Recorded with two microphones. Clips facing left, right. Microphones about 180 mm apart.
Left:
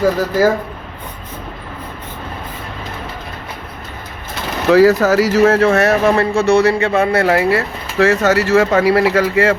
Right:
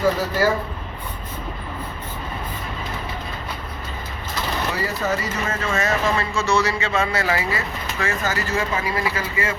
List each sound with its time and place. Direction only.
0.2 s speech: 45° left (ahead or behind)
4.7 s speech: 90° left; by 9.6 s 70° left (ahead or behind)